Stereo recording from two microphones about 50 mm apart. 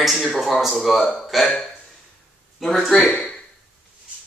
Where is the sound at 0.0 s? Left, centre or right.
Centre.